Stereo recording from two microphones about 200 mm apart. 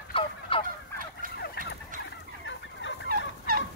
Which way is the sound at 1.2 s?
45° right (ahead or behind).